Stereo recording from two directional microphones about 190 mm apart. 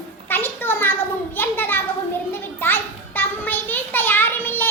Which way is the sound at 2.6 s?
10° left (ahead or behind).